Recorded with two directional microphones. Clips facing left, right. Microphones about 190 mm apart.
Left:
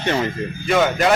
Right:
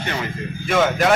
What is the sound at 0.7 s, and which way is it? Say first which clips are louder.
Speech: left 1 dB; centre (ahead or behind).